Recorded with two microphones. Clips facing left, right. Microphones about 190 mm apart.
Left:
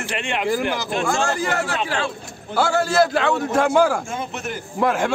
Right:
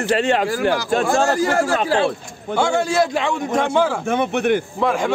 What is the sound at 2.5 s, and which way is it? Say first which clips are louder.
A man's voice: right 1 dB; 5° left (ahead or behind).